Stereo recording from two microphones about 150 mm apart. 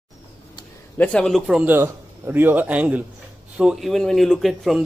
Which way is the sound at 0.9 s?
10° left (ahead or behind).